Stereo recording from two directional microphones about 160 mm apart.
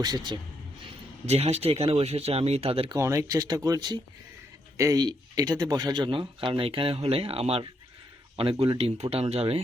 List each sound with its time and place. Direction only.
0.0 s speech: 25° right (ahead or behind)
1.3 s speech: 40° right (ahead or behind)
2.9 s speech: 20° right (ahead or behind); by 9.6 s 40° right (ahead or behind)